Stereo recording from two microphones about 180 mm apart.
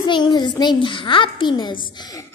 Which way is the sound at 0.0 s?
25° left (ahead or behind).